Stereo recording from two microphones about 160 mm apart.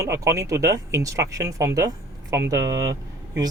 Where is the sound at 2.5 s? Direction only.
90° right.